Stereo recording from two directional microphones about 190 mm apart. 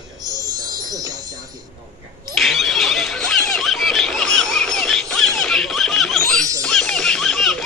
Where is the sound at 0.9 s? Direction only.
20° right (ahead or behind).